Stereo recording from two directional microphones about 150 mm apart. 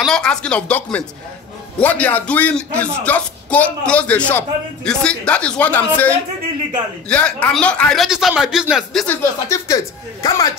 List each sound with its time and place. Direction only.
0.0 s a man's voice: 5° left (ahead or behind)
9.0 s speech: 10° left (ahead or behind)
10.2 s speech: 25° left (ahead or behind)